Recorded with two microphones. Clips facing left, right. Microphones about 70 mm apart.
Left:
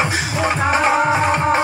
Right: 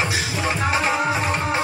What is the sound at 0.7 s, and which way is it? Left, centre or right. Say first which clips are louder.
Music: left 6 dB; left.